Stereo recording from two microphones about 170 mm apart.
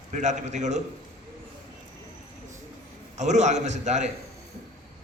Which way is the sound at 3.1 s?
45° right (ahead or behind).